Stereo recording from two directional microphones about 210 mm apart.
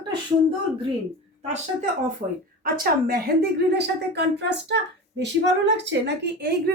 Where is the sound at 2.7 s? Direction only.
45° right (ahead or behind).